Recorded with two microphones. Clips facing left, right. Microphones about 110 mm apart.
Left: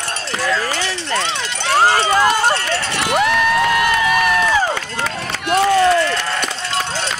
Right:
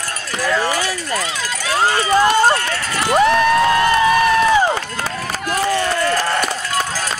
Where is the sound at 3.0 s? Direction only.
35° right (ahead or behind).